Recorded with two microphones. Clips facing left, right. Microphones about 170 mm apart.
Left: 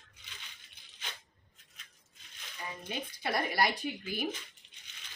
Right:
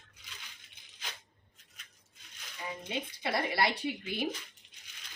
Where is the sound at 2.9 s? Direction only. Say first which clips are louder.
Even; 25° right (ahead or behind).